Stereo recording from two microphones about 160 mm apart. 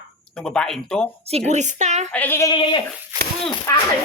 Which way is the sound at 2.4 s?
30° left (ahead or behind).